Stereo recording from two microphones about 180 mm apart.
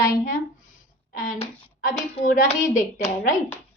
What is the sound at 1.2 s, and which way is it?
A woman's voice, 45° left (ahead or behind).